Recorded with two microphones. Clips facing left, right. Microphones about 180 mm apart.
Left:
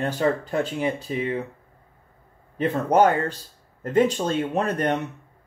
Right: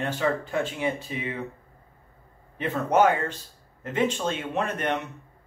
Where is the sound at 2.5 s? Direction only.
40° left (ahead or behind).